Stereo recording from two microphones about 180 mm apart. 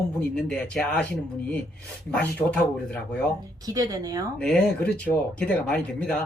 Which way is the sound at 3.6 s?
20° right (ahead or behind).